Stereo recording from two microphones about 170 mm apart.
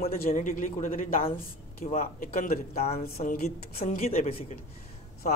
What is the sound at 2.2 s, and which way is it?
Speech, 55° left (ahead or behind).